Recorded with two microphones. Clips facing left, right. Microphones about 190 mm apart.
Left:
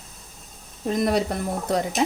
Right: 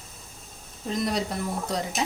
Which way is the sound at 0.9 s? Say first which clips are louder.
Left 5 dB; 55° left (ahead or behind).